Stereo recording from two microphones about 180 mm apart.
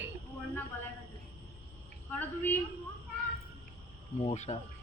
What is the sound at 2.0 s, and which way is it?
Speech, 10° left (ahead or behind).